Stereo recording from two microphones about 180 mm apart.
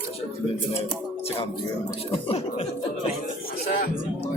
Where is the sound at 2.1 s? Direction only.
30° left (ahead or behind).